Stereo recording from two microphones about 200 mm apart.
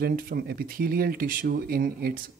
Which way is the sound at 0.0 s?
50° right (ahead or behind).